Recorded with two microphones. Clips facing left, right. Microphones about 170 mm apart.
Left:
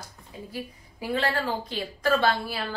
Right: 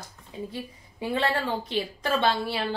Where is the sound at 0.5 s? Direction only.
25° right (ahead or behind).